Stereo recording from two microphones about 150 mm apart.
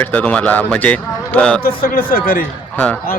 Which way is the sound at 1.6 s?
80° left.